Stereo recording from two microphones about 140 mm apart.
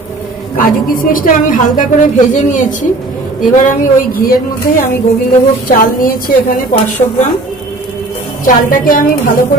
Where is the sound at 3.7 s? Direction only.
80° left.